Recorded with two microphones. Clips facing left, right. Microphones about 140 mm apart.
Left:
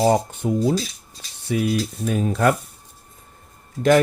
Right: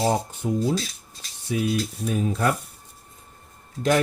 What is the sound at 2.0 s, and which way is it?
Speech, 80° left.